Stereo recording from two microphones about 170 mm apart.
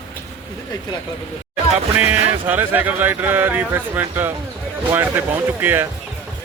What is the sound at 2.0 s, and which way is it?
Speech, 10° right (ahead or behind).